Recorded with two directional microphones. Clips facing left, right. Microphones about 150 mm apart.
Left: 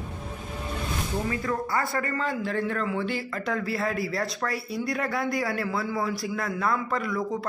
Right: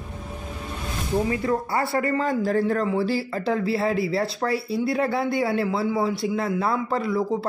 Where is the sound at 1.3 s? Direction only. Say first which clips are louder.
Right 4 dB; 30° right (ahead or behind).